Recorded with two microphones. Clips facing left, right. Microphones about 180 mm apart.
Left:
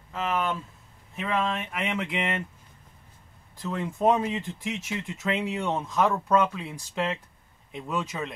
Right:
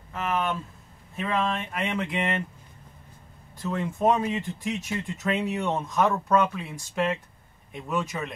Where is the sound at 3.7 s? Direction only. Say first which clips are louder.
Even; 10° left (ahead or behind).